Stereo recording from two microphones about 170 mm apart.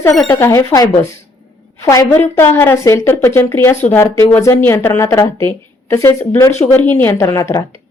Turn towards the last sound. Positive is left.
turn(degrees=15)  # may be behind; listen again after turning